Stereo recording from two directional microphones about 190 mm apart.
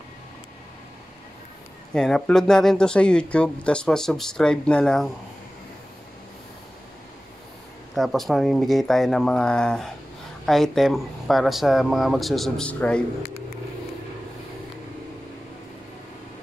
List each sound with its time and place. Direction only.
2.0 s speech: 5° left (ahead or behind)
7.9 s speech: centre (ahead or behind)